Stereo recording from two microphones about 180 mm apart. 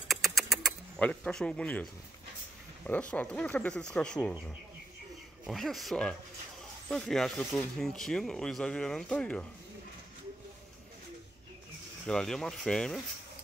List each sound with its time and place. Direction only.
0.1 s a sound: centre (ahead or behind)
2.9 s speech: 10° left (ahead or behind)
5.5 s speech: centre (ahead or behind)
12.1 s speech: 5° left (ahead or behind)